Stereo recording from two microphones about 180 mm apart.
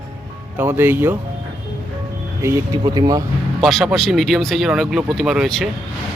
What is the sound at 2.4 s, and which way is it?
Speech, 20° right (ahead or behind).